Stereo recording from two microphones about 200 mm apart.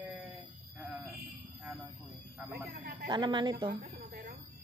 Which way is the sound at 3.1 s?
25° right (ahead or behind).